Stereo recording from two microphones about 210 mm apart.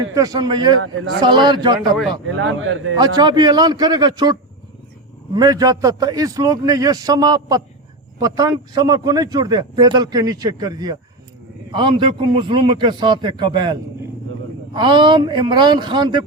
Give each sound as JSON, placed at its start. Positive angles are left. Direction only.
{"t": 0.1, "sound": "a man's voice", "side_deg": -15}
{"t": 2.2, "sound": "speech", "side_deg": -70}
{"t": 3.0, "sound": "a man's voice", "side_deg": -20}